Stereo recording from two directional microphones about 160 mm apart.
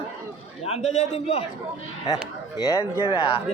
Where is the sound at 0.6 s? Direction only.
40° left (ahead or behind).